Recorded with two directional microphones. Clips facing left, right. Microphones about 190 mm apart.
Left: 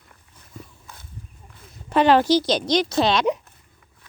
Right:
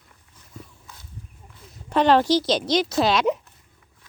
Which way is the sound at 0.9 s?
55° left (ahead or behind).